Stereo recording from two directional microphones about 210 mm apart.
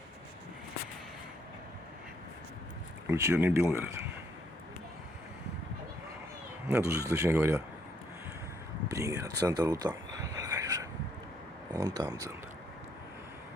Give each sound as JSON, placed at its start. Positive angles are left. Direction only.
{"t": 3.1, "sound": "speech", "side_deg": -15}
{"t": 6.7, "sound": "speech", "side_deg": -15}
{"t": 8.9, "sound": "a sound", "side_deg": -15}
{"t": 11.7, "sound": "speech", "side_deg": -15}